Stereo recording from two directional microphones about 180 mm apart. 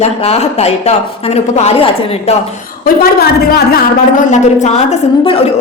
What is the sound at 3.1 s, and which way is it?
A woman's voice, 55° left (ahead or behind).